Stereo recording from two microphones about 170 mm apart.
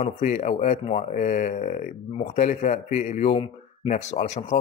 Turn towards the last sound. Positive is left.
turn(degrees=40)  # may be behind; listen again after turning